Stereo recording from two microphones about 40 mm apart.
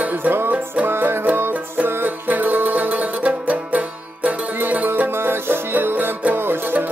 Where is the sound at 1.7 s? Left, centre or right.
Right.